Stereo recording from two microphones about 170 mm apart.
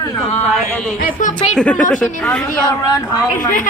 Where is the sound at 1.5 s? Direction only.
5° left (ahead or behind).